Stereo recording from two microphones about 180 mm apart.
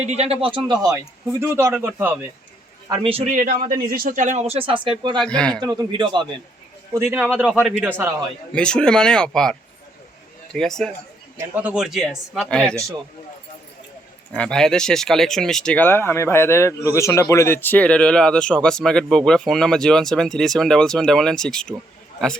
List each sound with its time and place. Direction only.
0.1 s speech: 35° right (ahead or behind); by 2.2 s 10° right (ahead or behind)
2.9 s speech: 30° right (ahead or behind)
3.3 s a man's voice: 50° right (ahead or behind); by 5.2 s 25° right (ahead or behind)
5.2 s speech: 5° left (ahead or behind)
5.5 s a man's voice: 25° right (ahead or behind)
7.0 s speech: 10° right (ahead or behind)
8.5 s speech: 5° left (ahead or behind)
14.3 s speech: 5° left (ahead or behind)